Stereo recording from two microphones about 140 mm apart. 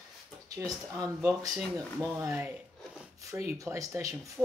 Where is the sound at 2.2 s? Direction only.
15° right (ahead or behind).